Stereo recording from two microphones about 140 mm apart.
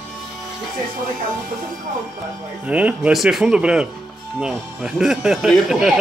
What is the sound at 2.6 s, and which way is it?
Speech, 10° right (ahead or behind).